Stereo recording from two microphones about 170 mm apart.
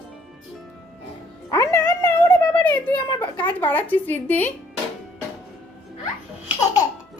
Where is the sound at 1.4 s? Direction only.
20° left (ahead or behind).